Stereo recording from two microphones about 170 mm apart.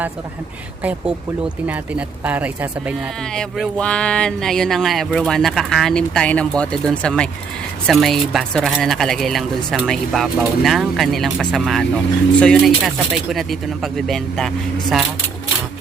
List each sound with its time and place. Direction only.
0.8 s speech: 10° right (ahead or behind)
3.3 s speech: 5° left (ahead or behind)